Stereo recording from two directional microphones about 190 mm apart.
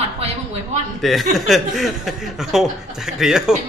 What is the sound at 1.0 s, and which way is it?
Speech, centre (ahead or behind).